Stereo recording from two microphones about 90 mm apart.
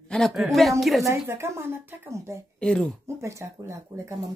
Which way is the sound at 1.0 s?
30° right (ahead or behind).